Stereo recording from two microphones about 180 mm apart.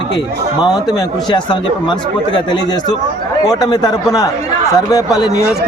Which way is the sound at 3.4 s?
20° left (ahead or behind).